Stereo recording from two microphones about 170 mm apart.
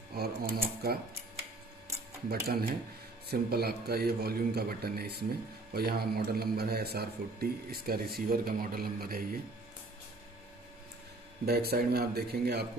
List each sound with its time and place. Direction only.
0.1 s a man's voice: 65° right (ahead or behind)
2.2 s a man's voice: 65° right (ahead or behind)
11.4 s a man's voice: 70° right (ahead or behind)